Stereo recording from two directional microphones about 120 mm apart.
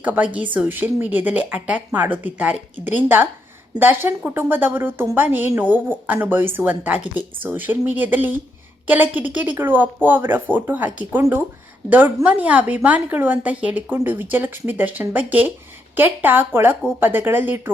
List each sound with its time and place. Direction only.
0.0 s a woman's voice: 10° right (ahead or behind)